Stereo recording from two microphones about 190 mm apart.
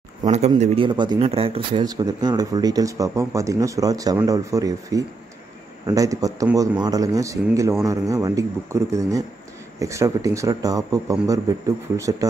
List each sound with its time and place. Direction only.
0.6 s speech: 25° right (ahead or behind)